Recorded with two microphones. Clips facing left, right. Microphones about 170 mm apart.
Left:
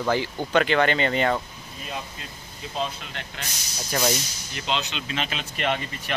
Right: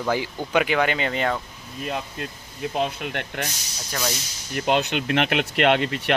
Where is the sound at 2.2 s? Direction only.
60° right (ahead or behind).